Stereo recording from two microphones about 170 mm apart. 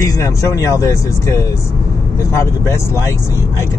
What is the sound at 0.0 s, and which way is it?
Speech, 15° left (ahead or behind).